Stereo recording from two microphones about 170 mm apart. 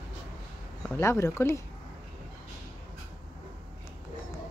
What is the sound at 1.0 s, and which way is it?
Speech, 15° left (ahead or behind).